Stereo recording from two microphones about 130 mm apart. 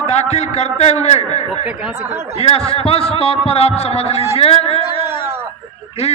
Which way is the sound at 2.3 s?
50° left (ahead or behind).